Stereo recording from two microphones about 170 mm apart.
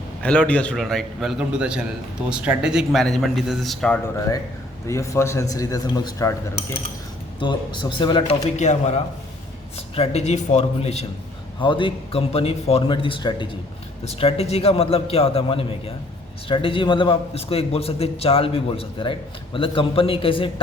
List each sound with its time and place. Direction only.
0.2 s a man's voice: 5° left (ahead or behind)
4.9 s a man's voice: 15° left (ahead or behind)
7.3 s speech: 30° left (ahead or behind)
8.5 s a man's voice: 45° left (ahead or behind)